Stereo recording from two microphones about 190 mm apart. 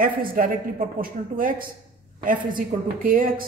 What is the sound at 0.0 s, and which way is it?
A woman's voice, 50° right (ahead or behind).